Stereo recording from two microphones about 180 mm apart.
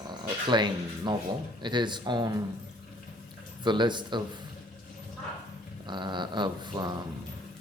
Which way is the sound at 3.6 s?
25° right (ahead or behind).